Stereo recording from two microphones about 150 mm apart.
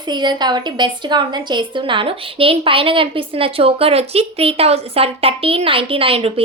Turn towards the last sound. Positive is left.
turn(degrees=-40)  # may be behind; listen again after turning